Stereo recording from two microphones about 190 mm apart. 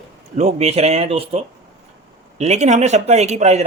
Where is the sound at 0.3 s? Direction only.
35° right (ahead or behind).